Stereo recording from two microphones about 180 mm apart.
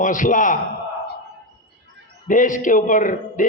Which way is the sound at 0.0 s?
45° left (ahead or behind).